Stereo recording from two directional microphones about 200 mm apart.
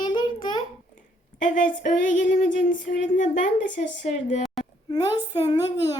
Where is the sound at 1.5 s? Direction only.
40° left (ahead or behind).